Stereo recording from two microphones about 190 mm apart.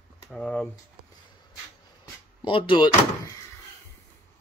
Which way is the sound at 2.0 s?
25° left (ahead or behind).